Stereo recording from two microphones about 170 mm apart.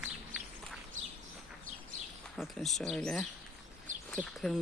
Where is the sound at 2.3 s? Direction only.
Centre (ahead or behind).